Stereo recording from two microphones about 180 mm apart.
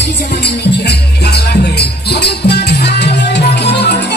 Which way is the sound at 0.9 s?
65° left (ahead or behind).